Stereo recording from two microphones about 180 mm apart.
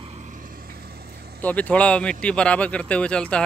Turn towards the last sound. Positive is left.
turn(degrees=5)  # may be behind; listen again after turning